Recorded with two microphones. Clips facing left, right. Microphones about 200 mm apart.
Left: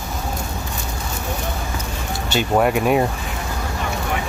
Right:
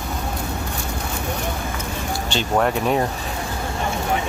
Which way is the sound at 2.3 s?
10° left (ahead or behind).